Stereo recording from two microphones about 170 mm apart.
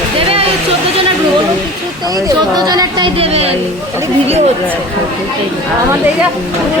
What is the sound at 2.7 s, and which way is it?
Speech, 25° right (ahead or behind).